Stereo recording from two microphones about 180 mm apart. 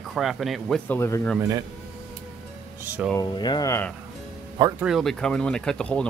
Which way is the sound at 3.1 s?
25° left (ahead or behind).